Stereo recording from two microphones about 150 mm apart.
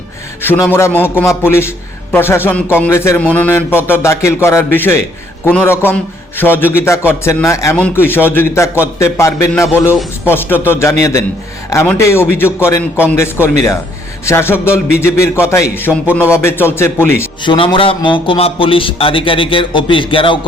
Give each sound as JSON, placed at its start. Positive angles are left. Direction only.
{"t": 0.4, "sound": "a man's voice", "side_deg": 15}
{"t": 17.4, "sound": "speech", "side_deg": 30}